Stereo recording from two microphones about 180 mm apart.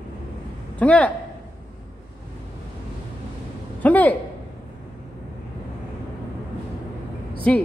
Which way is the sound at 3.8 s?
10° left (ahead or behind).